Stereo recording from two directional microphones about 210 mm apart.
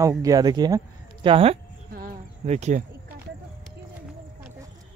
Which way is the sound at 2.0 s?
40° right (ahead or behind).